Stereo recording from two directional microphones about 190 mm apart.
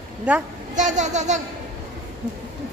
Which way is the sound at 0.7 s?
40° right (ahead or behind).